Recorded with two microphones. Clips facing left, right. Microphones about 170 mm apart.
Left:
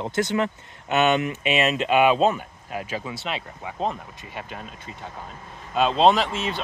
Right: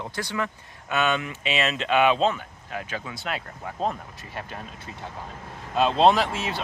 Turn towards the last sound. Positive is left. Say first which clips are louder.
# left 1 dB
turn(degrees=-5)  # may be behind; listen again after turning